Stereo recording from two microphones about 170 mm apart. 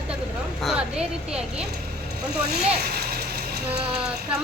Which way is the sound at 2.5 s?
65° right (ahead or behind).